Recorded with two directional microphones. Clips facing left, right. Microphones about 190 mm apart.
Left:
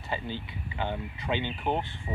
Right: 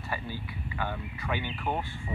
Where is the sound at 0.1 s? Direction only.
20° left (ahead or behind).